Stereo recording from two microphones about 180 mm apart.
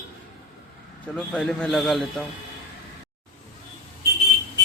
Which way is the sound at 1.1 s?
5° left (ahead or behind).